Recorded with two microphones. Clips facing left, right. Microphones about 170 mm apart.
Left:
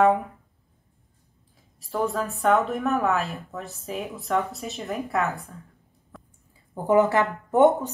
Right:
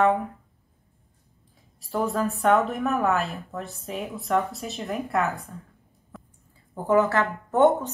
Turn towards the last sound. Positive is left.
turn(degrees=15)  # may be behind; listen again after turning